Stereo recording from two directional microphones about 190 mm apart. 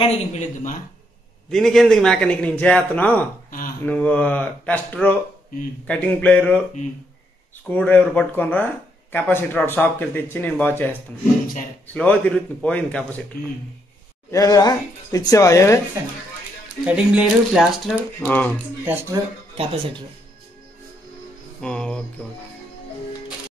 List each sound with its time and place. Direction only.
0.0 s speech: 40° left (ahead or behind)
1.5 s a man's voice: centre (ahead or behind)
7.6 s speech: 10° left (ahead or behind)
14.3 s speech: 20° left (ahead or behind)
16.8 s a man's voice: 5° right (ahead or behind)
18.2 s speech: 10° left (ahead or behind)
19.2 s speech: 20° right (ahead or behind)
19.5 s speech: 30° right (ahead or behind)
21.5 s a man's voice: 5° left (ahead or behind)